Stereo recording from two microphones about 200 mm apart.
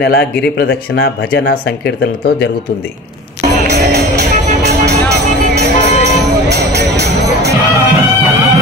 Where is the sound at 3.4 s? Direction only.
55° right (ahead or behind).